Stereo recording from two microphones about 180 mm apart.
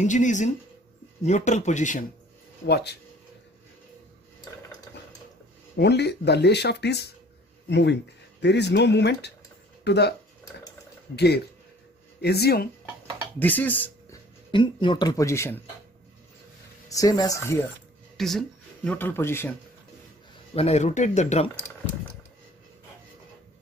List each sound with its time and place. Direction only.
0.0 s speech: 45° left (ahead or behind)
2.6 s speech: 65° left (ahead or behind)
5.8 s speech: 65° left (ahead or behind)
11.1 s speech: 65° left (ahead or behind)
13.4 s speech: 10° left (ahead or behind)
14.5 s speech: 25° left (ahead or behind)
16.9 s speech: 20° left (ahead or behind)
18.1 s a sound: centre (ahead or behind)
18.9 s speech: 10° left (ahead or behind)
20.5 s speech: 35° left (ahead or behind)